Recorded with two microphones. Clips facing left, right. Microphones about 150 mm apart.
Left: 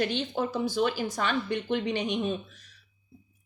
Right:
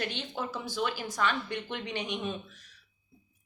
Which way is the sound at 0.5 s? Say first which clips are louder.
Left 6 dB; 40° left (ahead or behind).